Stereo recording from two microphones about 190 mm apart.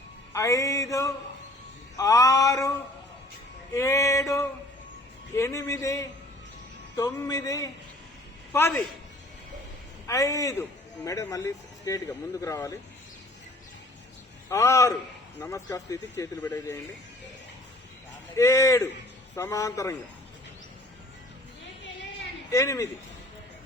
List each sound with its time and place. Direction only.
0.3 s a man's voice: 15° left (ahead or behind)
3.8 s a man's voice: 15° left (ahead or behind)
10.1 s a man's voice: 15° left (ahead or behind)
14.5 s a man's voice: 15° left (ahead or behind)
18.3 s a man's voice: 15° left (ahead or behind)
22.5 s a man's voice: 15° left (ahead or behind)